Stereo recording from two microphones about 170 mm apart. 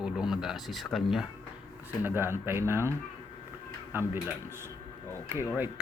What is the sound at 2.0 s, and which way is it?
Speech, 10° right (ahead or behind).